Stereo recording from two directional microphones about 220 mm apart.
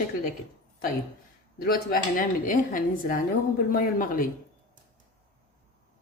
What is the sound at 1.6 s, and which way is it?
Speech, 40° left (ahead or behind).